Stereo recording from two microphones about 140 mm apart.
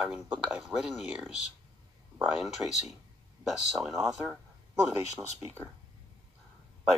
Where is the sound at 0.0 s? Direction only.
5° right (ahead or behind).